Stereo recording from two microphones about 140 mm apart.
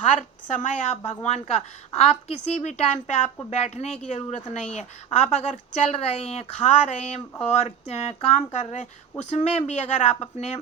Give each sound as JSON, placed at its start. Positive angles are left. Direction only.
{"t": 0.0, "sound": "a woman's voice", "side_deg": 60}